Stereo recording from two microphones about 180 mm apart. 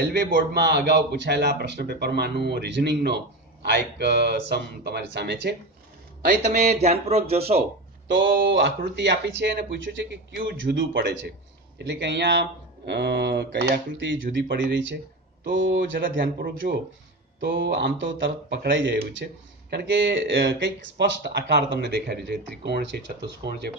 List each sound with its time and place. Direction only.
0.0 s a man's voice: 65° right (ahead or behind)
6.4 s speech: 40° right (ahead or behind)
8.1 s speech: 90° right
8.4 s a man's voice: 75° right (ahead or behind)
17.4 s speech: 80° right
19.7 s a man's voice: 70° right (ahead or behind)
23.4 s speech: 65° right (ahead or behind)